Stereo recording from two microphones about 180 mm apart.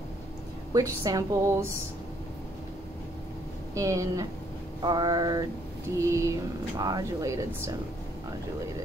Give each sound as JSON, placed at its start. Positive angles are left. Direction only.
{"t": 0.7, "sound": "a woman's voice", "side_deg": -20}
{"t": 3.7, "sound": "a woman's voice", "side_deg": -15}